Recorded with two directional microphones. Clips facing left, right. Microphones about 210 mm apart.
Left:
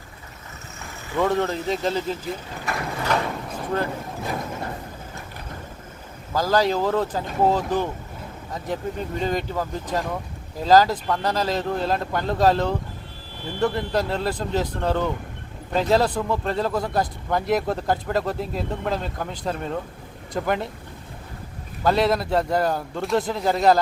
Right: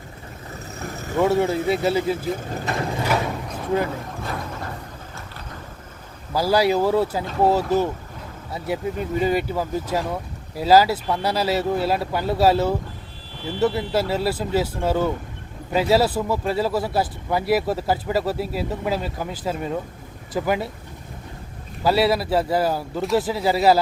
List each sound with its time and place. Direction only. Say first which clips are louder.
1.2 s speech: right 3 dB; 10° right (ahead or behind)
4.2 s a sound: left 1 dB; 15° left (ahead or behind)
6.3 s speech: right 2 dB; 10° right (ahead or behind)
21.8 s speech: right 1 dB; 5° right (ahead or behind)